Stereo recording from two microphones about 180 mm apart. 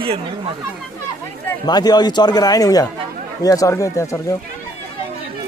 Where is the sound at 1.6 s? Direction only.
20° left (ahead or behind).